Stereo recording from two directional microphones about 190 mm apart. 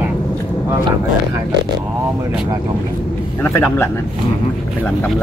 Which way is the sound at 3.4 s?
10° left (ahead or behind).